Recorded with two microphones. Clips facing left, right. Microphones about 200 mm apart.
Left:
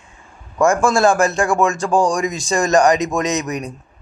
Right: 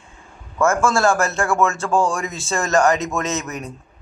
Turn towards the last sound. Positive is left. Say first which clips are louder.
# left 5 dB
turn(degrees=15)  # may be behind; listen again after turning